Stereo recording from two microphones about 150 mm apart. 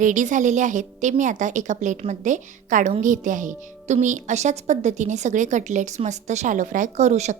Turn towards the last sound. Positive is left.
turn(degrees=-50)  # may be behind; listen again after turning